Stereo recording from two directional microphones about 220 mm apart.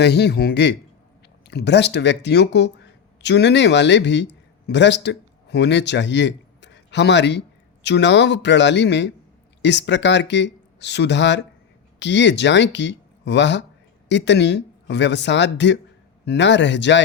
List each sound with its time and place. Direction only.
0.0 s a man's voice: 50° left (ahead or behind)